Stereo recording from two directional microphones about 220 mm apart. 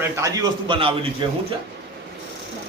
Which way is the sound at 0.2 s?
20° right (ahead or behind).